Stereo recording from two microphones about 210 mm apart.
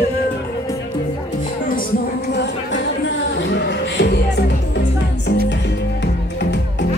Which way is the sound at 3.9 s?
55° left (ahead or behind).